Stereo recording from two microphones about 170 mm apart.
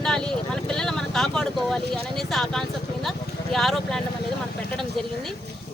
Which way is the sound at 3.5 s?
Centre (ahead or behind).